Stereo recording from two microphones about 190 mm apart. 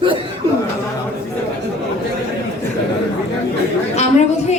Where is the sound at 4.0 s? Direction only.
35° left (ahead or behind).